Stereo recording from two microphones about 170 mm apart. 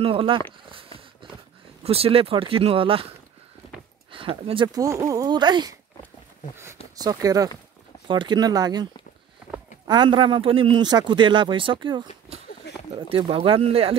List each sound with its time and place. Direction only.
0.0 s speech: 30° right (ahead or behind)
0.7 s a sound: 30° right (ahead or behind)
1.8 s speech: 35° right (ahead or behind)
4.1 s speech: 30° right (ahead or behind)
4.8 s a man's voice: 20° right (ahead or behind)
7.0 s a man's voice: 20° right (ahead or behind)
9.8 s a man's voice: 25° right (ahead or behind)
12.7 s a sound: 85° left
13.1 s speech: 30° right (ahead or behind)